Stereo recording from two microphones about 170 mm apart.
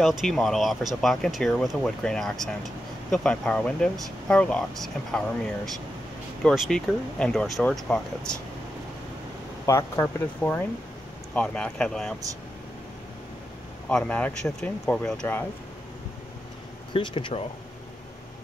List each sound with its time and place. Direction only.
0.0 s speech: centre (ahead or behind)
6.4 s speech: centre (ahead or behind)
9.7 s speech: 15° left (ahead or behind)
13.8 s speech: 5° left (ahead or behind)
16.9 s speech: 30° left (ahead or behind)